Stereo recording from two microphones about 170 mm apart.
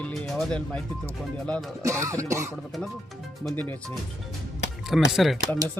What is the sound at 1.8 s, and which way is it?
Throat clearing, 15° right (ahead or behind).